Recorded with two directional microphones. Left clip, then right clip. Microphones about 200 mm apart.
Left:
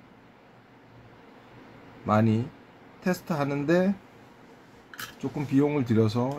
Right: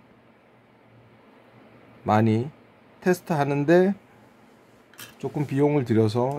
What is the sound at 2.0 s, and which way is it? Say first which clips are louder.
Speech: right 3 dB; 55° right (ahead or behind).